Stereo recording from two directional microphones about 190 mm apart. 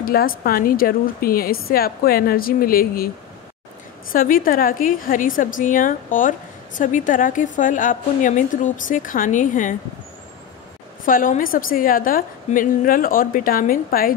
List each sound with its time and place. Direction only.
0.0 s a woman's voice: 50° left (ahead or behind)
4.1 s a woman's voice: 50° left (ahead or behind)
11.1 s a woman's voice: 45° left (ahead or behind)